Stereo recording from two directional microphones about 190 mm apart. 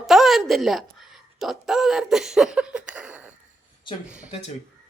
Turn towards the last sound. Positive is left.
turn(degrees=35)  # may be behind; listen again after turning